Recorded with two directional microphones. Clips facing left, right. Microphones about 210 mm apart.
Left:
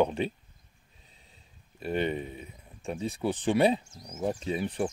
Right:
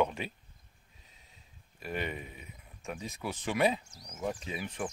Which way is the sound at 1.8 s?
30° left (ahead or behind).